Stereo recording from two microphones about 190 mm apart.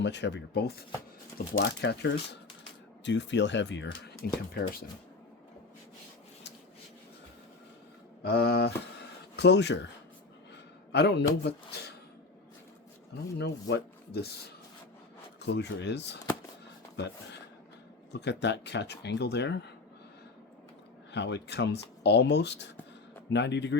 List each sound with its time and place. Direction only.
0.0 s speech: 65° left (ahead or behind)
4.2 s speech: 50° left (ahead or behind)
8.2 s speech: 60° left (ahead or behind)
10.9 s speech: 60° left (ahead or behind)
13.4 s speech: 60° left (ahead or behind)
15.4 s speech: 65° left (ahead or behind)
18.1 s speech: 65° left (ahead or behind)
21.1 s speech: 65° left (ahead or behind)